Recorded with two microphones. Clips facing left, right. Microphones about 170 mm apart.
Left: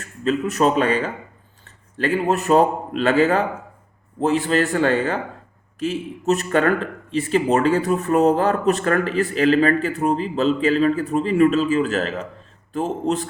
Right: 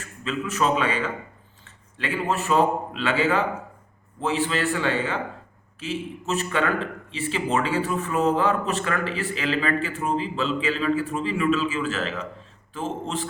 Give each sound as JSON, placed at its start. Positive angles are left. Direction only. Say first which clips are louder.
{"t": 0.0, "sound": "a man's voice", "louder": "left 8 dB", "side_deg": 40}